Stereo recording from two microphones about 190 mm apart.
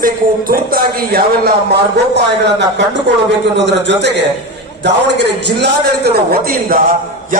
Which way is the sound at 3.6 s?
65° right (ahead or behind).